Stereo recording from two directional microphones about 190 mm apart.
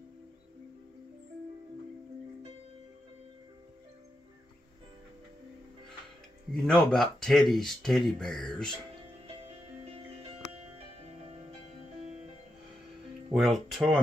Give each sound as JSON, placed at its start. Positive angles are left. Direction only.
{"t": 6.5, "sound": "speech", "side_deg": 5}
{"t": 9.5, "sound": "music", "side_deg": -30}
{"t": 13.3, "sound": "speech", "side_deg": 0}